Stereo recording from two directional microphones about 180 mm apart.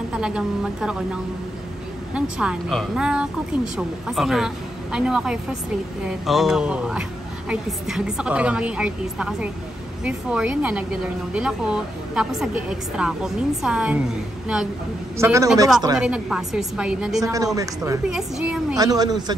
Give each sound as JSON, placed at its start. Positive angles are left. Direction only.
{"t": 0.1, "sound": "speech", "side_deg": -5}
{"t": 2.1, "sound": "speech", "side_deg": -5}
{"t": 15.1, "sound": "a man's voice", "side_deg": -15}
{"t": 16.0, "sound": "speech", "side_deg": -5}
{"t": 17.2, "sound": "a man's voice", "side_deg": -20}
{"t": 18.0, "sound": "speech", "side_deg": -5}
{"t": 18.8, "sound": "speech", "side_deg": -20}